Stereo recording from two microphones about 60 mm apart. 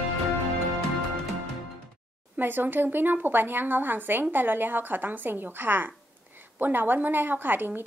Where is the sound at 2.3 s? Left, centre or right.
Right.